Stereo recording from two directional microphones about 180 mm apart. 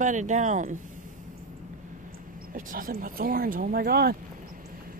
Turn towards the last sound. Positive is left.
turn(degrees=-55)  # may be behind; listen again after turning